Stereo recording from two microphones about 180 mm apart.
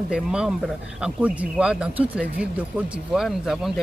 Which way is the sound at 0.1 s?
5° right (ahead or behind).